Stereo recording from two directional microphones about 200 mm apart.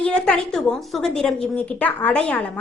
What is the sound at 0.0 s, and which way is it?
A woman's voice, 5° left (ahead or behind).